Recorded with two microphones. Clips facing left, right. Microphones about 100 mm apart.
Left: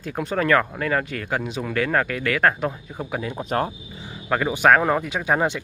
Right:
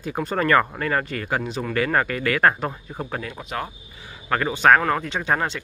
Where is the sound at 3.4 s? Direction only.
40° left (ahead or behind).